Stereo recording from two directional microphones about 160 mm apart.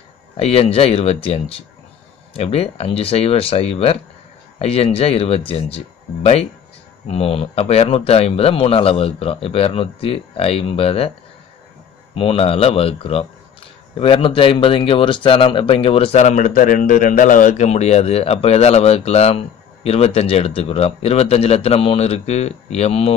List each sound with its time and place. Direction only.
0.4 s speech: 40° left (ahead or behind)
7.1 s speech: 35° left (ahead or behind)
12.2 s speech: 35° left (ahead or behind)